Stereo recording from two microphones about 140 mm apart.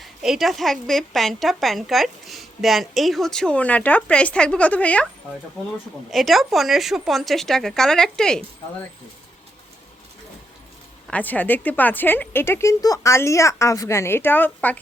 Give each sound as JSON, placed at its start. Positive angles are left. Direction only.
{"t": 0.0, "sound": "a woman's voice", "side_deg": 0}
{"t": 6.1, "sound": "a woman's voice", "side_deg": 0}
{"t": 11.1, "sound": "a woman's voice", "side_deg": 10}